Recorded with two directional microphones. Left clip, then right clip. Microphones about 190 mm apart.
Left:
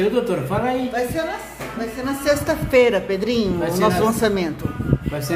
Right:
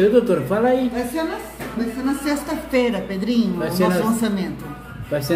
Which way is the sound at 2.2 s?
40° left (ahead or behind).